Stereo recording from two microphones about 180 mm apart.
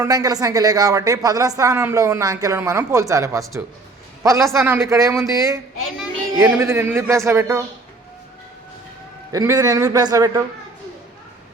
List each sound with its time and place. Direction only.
0.0 s a man's voice: 20° right (ahead or behind)
9.3 s a man's voice: 15° right (ahead or behind)